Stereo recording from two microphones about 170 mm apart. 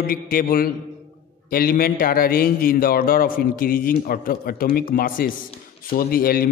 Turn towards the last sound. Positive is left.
turn(degrees=60)  # may be behind; listen again after turning